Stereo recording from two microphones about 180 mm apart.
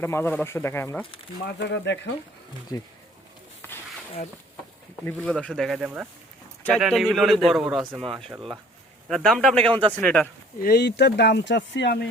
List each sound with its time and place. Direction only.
0.0 s speech: 10° left (ahead or behind)
1.5 s speech: 70° left (ahead or behind)
5.4 s speech: 5° left (ahead or behind)
9.0 s speech: centre (ahead or behind)
10.6 s speech: 65° left (ahead or behind)